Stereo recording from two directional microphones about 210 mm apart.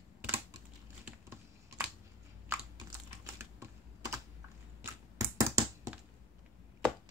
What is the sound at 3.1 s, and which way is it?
Typing, 15° right (ahead or behind).